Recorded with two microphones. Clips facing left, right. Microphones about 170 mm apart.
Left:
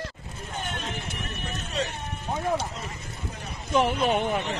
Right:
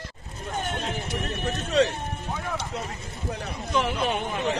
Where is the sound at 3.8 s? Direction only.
45° left (ahead or behind).